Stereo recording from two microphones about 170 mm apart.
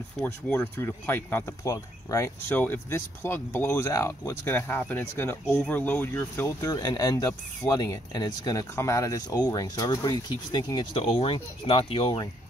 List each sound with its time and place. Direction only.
0.2 s speech: 10° left (ahead or behind); by 12.3 s 30° left (ahead or behind)